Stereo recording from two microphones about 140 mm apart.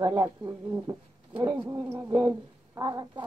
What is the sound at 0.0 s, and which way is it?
Speech, 30° right (ahead or behind).